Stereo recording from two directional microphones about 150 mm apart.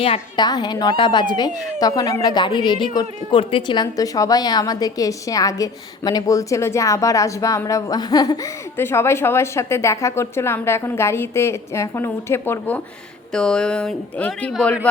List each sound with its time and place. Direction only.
0.0 s a woman's voice: 40° left (ahead or behind)
0.4 s speech: 30° left (ahead or behind)
8.8 s a woman's voice: 15° left (ahead or behind)